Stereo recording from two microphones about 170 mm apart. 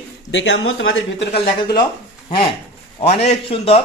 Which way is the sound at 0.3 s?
90° left.